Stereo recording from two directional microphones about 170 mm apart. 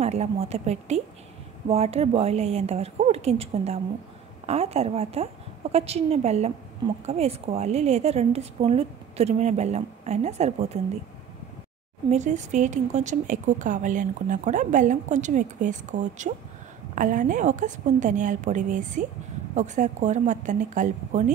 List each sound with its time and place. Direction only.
0.0 s a woman's voice: 40° right (ahead or behind)
12.1 s speech: 45° right (ahead or behind)